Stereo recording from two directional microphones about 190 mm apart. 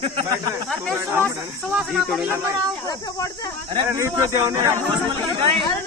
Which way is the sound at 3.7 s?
20° right (ahead or behind).